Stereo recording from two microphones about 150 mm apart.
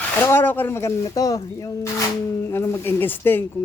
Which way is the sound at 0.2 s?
15° left (ahead or behind).